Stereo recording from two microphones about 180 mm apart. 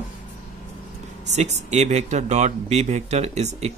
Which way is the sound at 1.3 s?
40° right (ahead or behind).